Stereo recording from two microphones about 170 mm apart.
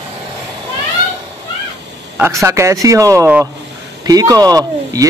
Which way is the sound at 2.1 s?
15° right (ahead or behind).